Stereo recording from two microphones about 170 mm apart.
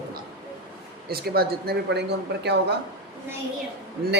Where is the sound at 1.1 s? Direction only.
65° right (ahead or behind).